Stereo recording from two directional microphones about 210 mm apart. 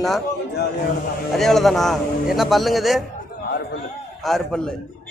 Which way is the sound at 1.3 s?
Centre (ahead or behind).